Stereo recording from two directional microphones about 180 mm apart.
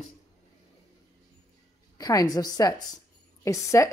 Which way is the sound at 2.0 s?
20° left (ahead or behind).